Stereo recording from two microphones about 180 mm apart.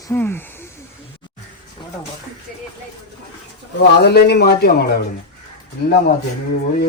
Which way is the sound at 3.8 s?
65° left (ahead or behind).